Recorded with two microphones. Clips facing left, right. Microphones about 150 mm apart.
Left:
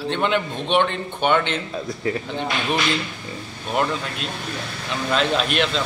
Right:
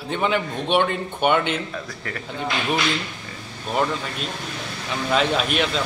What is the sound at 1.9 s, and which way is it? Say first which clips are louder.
Speech: left 8 dB; 25° left (ahead or behind).